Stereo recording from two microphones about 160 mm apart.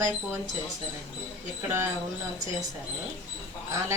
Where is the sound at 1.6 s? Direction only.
15° right (ahead or behind).